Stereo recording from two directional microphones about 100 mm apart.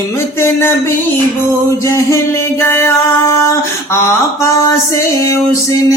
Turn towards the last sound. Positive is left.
turn(degrees=35)  # may be behind; listen again after turning